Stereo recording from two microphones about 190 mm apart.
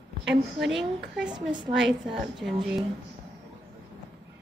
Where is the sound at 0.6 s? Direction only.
Centre (ahead or behind).